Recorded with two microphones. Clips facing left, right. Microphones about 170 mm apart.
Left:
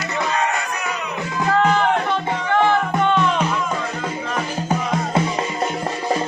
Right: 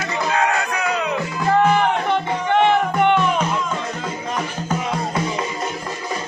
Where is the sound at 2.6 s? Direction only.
20° right (ahead or behind).